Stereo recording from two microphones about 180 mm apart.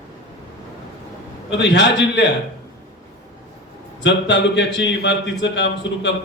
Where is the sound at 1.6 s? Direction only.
75° left (ahead or behind).